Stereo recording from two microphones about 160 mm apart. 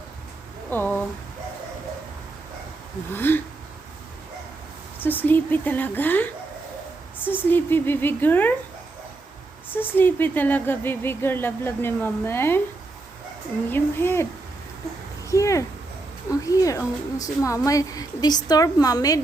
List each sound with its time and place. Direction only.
0.7 s a sound: 10° left (ahead or behind)
3.1 s speech: 15° left (ahead or behind)
4.9 s speech: 10° left (ahead or behind)
9.7 s speech: 10° left (ahead or behind)
13.7 s speech: 15° left (ahead or behind)
15.3 s a woman's voice: 20° left (ahead or behind)